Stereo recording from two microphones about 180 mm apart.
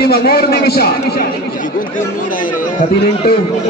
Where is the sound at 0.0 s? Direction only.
60° left (ahead or behind).